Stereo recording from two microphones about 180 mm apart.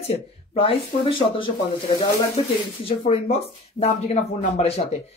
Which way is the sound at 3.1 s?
35° left (ahead or behind).